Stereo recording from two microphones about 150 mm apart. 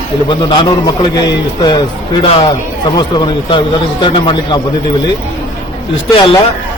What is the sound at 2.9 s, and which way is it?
A man's voice, 30° left (ahead or behind).